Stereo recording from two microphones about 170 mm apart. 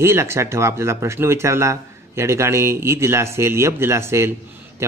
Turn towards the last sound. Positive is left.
turn(degrees=-15)  # may be behind; listen again after turning